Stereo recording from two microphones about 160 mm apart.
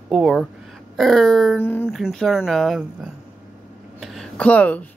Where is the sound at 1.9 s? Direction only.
Centre (ahead or behind).